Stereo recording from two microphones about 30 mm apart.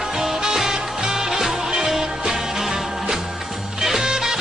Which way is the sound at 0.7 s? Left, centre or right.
Centre.